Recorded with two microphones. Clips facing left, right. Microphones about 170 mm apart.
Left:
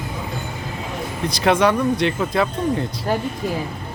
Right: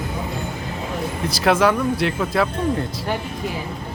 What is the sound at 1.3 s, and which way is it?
Speech, 5° right (ahead or behind).